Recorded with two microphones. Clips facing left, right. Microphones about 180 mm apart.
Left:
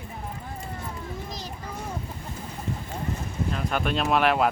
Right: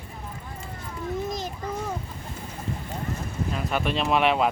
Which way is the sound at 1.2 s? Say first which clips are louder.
Right 7 dB; 50° right (ahead or behind).